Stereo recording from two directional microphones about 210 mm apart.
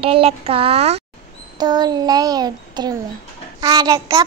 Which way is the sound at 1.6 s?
20° right (ahead or behind).